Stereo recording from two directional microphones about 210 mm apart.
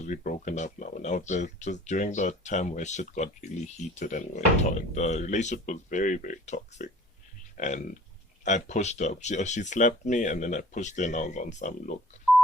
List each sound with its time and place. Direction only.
0.0 s speech: 40° left (ahead or behind)